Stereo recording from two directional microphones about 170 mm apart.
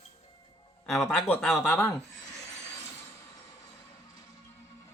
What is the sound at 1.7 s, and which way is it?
Speech, 15° left (ahead or behind).